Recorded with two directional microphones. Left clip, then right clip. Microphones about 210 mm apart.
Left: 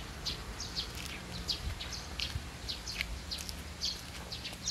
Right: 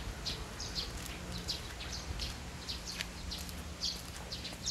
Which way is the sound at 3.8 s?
30° right (ahead or behind).